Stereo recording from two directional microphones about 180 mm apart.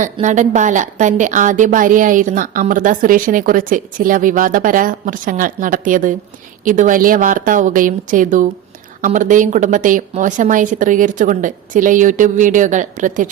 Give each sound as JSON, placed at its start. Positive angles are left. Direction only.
{"t": 0.0, "sound": "a woman's voice", "side_deg": -45}